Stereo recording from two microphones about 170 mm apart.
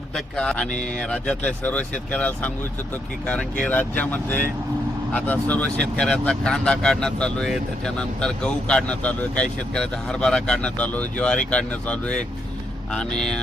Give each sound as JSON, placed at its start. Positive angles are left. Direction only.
{"t": 0.3, "sound": "speech", "side_deg": 5}